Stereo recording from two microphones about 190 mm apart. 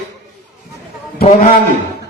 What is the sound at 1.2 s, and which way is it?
Speech, 40° left (ahead or behind).